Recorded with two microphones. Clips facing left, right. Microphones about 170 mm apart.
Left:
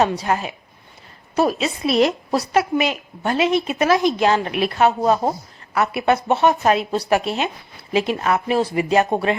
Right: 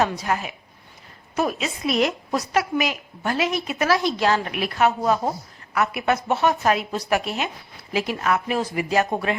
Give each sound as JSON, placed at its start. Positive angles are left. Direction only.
{"t": 0.0, "sound": "a woman's voice", "side_deg": 30}